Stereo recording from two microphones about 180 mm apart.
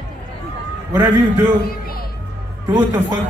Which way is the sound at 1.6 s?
55° left (ahead or behind).